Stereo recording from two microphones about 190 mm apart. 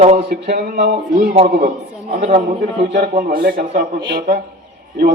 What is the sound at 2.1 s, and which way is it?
Speech, 35° right (ahead or behind).